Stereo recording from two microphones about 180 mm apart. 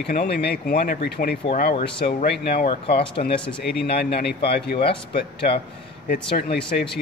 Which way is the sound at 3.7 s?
65° left (ahead or behind).